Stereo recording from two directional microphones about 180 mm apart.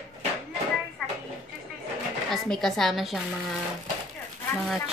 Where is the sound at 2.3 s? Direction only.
Centre (ahead or behind).